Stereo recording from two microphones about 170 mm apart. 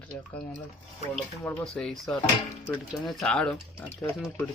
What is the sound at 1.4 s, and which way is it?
Speech, 15° left (ahead or behind).